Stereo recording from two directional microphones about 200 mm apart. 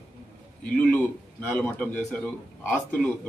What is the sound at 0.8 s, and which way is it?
A man's voice, 5° left (ahead or behind).